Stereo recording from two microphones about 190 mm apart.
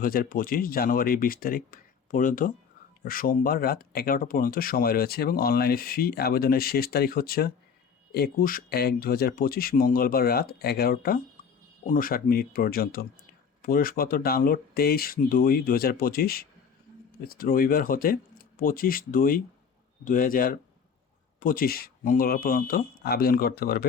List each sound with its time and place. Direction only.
0.0 s speech: 50° left (ahead or behind)